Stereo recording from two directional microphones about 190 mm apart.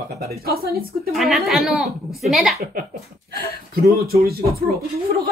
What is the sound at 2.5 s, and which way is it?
A woman's voice, 50° right (ahead or behind).